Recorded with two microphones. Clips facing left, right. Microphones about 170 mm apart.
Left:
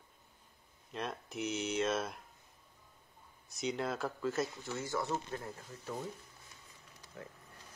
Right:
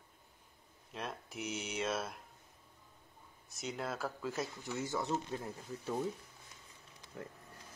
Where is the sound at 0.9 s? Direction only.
10° right (ahead or behind).